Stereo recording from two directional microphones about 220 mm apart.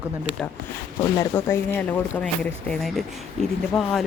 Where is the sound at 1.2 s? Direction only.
10° left (ahead or behind).